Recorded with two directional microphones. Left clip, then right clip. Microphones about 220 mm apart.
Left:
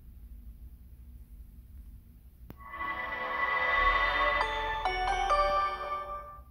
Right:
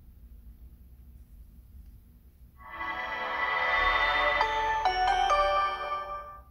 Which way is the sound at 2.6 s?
Centre (ahead or behind).